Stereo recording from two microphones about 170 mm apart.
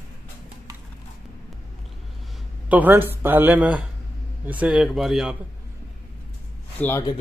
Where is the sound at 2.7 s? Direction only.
10° right (ahead or behind).